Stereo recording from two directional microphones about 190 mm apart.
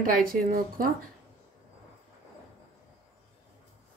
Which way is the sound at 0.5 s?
50° right (ahead or behind).